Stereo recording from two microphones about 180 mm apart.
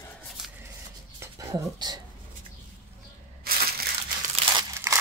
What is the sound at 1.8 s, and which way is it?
Speech, 25° right (ahead or behind).